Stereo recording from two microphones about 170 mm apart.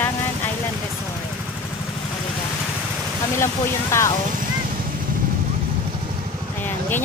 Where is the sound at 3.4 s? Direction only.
15° left (ahead or behind).